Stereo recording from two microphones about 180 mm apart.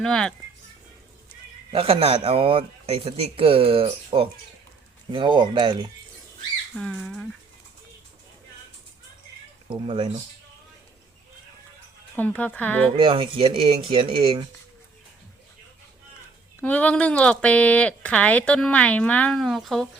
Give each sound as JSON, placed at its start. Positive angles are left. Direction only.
{"t": 0.0, "sound": "speech", "side_deg": 5}
{"t": 1.7, "sound": "a man's voice", "side_deg": -30}
{"t": 6.7, "sound": "speech", "side_deg": 0}
{"t": 9.6, "sound": "speech", "side_deg": -30}
{"t": 12.1, "sound": "speech", "side_deg": 10}
{"t": 13.0, "sound": "speech", "side_deg": -30}
{"t": 16.6, "sound": "speech", "side_deg": 10}